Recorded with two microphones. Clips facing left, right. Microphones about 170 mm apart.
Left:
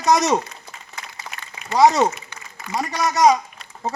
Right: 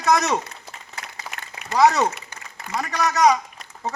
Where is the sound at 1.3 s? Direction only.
10° right (ahead or behind).